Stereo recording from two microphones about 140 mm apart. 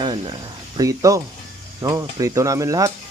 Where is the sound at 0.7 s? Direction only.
25° right (ahead or behind).